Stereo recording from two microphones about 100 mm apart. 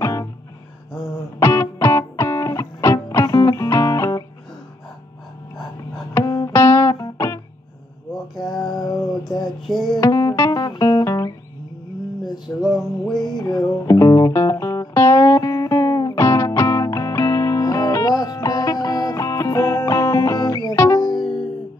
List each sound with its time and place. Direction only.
0.0 s music: 30° left (ahead or behind)
1.4 s music: 25° left (ahead or behind)
6.1 s music: 35° left (ahead or behind)
8.1 s a sound: centre (ahead or behind)
9.7 s music: 5° left (ahead or behind)
9.9 s music: 35° left (ahead or behind)
12.6 s music: 5° left (ahead or behind)
13.2 s music: 45° left (ahead or behind)
13.7 s music: 35° left (ahead or behind)
20.7 s music: 25° left (ahead or behind)
21.0 s music: 45° left (ahead or behind)